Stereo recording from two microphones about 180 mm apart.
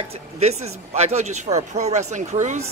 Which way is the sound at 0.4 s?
35° right (ahead or behind).